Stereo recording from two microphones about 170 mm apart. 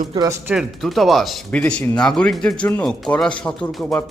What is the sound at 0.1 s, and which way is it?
Speech, 25° right (ahead or behind).